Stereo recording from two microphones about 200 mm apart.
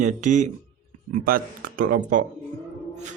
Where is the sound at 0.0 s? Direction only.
40° right (ahead or behind).